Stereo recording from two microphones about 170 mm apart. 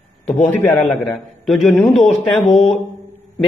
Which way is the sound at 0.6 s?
10° left (ahead or behind).